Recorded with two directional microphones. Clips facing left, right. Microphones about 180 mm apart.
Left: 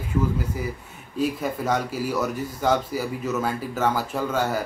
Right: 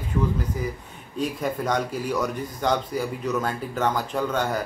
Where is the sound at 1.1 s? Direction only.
5° left (ahead or behind).